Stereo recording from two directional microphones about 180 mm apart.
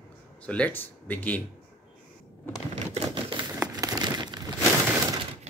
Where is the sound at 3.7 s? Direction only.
20° right (ahead or behind).